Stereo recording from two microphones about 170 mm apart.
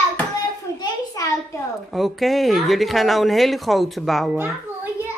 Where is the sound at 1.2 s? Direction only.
20° left (ahead or behind).